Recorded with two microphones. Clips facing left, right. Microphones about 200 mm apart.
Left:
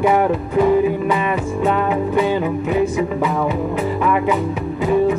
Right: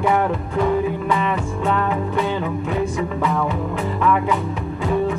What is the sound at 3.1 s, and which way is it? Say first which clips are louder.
Music: left 2 dB; 15° left (ahead or behind).